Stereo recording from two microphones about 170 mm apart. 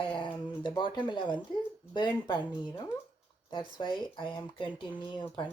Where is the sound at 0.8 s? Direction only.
25° left (ahead or behind).